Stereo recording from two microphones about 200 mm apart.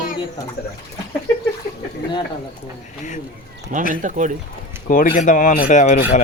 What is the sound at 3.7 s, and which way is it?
Speech, 40° right (ahead or behind).